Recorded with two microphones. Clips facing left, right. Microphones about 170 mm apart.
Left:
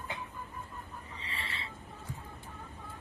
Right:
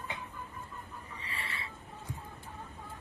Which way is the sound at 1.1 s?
25° left (ahead or behind).